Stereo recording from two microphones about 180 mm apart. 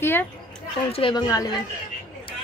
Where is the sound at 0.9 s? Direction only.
30° left (ahead or behind).